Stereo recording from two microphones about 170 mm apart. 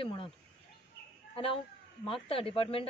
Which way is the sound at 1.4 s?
30° left (ahead or behind).